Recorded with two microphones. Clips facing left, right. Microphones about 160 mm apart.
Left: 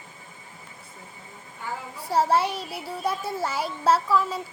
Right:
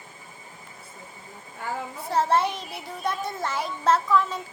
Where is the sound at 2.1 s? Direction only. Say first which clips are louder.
Left 1 dB; 10° left (ahead or behind).